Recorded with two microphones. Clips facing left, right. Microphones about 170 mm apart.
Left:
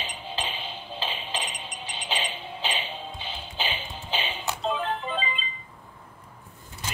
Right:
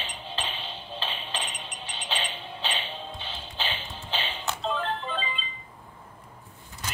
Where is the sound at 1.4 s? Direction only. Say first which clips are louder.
Left 1 dB; 10° left (ahead or behind).